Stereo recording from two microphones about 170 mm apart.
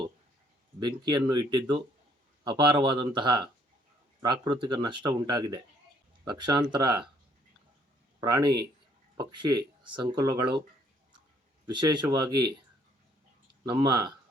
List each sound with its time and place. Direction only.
0.8 s speech: 25° right (ahead or behind)
8.2 s speech: 25° right (ahead or behind)
11.6 s speech: 25° right (ahead or behind)
13.7 s speech: 25° right (ahead or behind)